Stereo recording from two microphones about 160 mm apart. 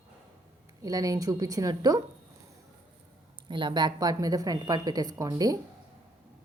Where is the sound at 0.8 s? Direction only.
20° right (ahead or behind).